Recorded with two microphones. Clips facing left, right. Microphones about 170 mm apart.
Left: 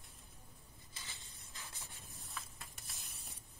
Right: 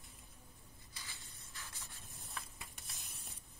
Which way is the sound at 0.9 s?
20° left (ahead or behind).